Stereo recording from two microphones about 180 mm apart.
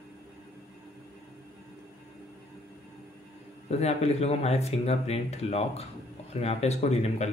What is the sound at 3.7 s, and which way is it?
Speech, 35° left (ahead or behind).